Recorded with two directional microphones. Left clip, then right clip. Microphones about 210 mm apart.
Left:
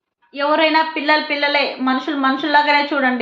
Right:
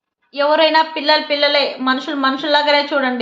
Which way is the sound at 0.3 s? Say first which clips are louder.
Right 2 dB; 10° right (ahead or behind).